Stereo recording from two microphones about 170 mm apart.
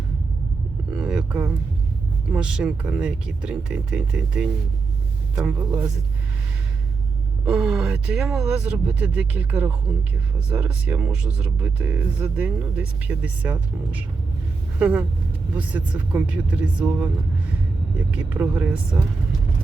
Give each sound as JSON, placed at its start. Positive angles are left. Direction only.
{"t": 0.9, "sound": "a sound", "side_deg": -5}
{"t": 2.3, "sound": "speech", "side_deg": -5}
{"t": 7.4, "sound": "speech", "side_deg": -5}
{"t": 18.1, "sound": "speech", "side_deg": -10}